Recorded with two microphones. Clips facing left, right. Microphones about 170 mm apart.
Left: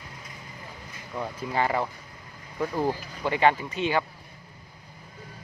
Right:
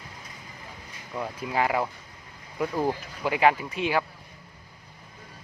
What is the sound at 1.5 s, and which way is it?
Speech, 5° right (ahead or behind).